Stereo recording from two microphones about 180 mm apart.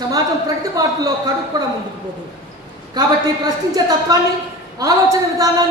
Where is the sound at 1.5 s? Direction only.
20° right (ahead or behind).